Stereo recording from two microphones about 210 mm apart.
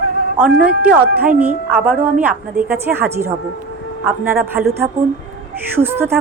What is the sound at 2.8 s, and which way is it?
A woman's voice, 10° right (ahead or behind).